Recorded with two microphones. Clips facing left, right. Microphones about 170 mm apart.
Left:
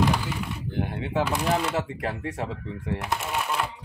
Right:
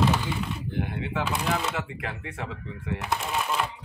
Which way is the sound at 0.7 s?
35° left (ahead or behind).